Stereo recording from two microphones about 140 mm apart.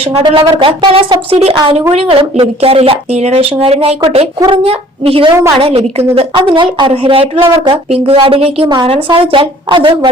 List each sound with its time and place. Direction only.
0.0 s speech: 40° right (ahead or behind)